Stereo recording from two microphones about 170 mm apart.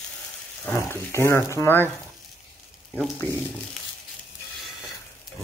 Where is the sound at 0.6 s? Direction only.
15° left (ahead or behind).